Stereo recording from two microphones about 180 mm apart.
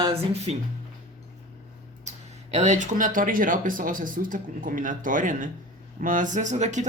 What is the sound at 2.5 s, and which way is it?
Speech, 40° right (ahead or behind).